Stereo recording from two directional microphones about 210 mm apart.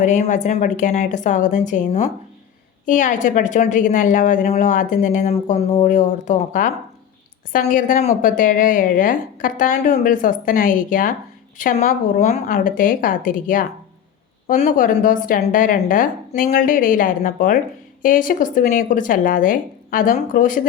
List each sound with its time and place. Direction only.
0.0 s a woman's voice: 35° left (ahead or behind)